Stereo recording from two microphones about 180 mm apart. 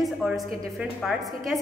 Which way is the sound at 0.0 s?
Centre (ahead or behind).